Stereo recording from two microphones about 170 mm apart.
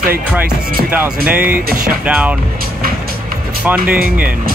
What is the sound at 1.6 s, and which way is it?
Speech, 55° right (ahead or behind).